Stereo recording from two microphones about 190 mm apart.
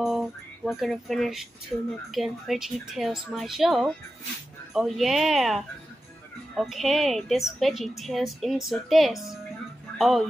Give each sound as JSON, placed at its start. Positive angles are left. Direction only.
{"t": 0.0, "sound": "a woman's voice", "side_deg": 0}